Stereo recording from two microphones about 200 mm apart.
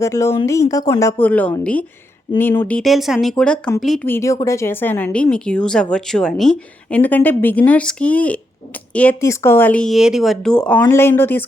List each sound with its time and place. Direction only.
0.0 s speech: 15° left (ahead or behind)